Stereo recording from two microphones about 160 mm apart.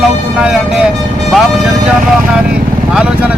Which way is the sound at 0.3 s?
5° right (ahead or behind).